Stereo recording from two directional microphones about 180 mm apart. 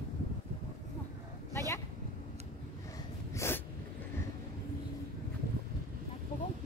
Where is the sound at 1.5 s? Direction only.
15° left (ahead or behind).